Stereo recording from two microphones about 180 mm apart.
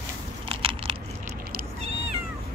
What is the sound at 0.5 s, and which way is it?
Biting, 30° right (ahead or behind).